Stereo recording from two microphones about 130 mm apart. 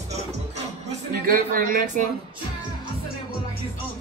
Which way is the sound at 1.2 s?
90° right.